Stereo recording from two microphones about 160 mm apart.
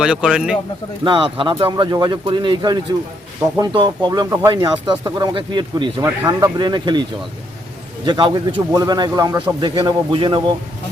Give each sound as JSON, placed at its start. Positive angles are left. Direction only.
{"t": 0.0, "sound": "a man's voice", "side_deg": -5}
{"t": 1.0, "sound": "speech", "side_deg": -30}
{"t": 8.0, "sound": "speech", "side_deg": -25}